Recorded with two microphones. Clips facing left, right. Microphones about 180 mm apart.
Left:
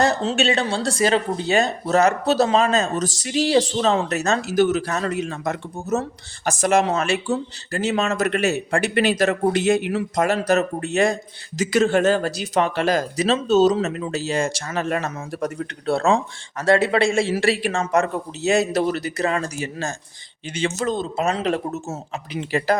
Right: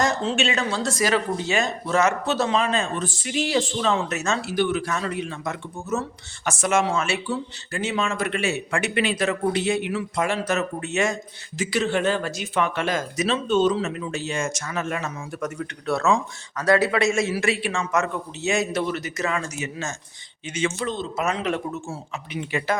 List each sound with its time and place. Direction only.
0.0 s speech: 35° left (ahead or behind)
21.2 s speech: 35° left (ahead or behind)